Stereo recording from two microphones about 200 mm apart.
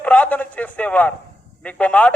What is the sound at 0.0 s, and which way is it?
A man's voice, 10° left (ahead or behind).